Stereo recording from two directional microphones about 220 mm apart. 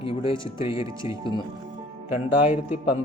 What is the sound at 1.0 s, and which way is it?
Speech, 15° right (ahead or behind).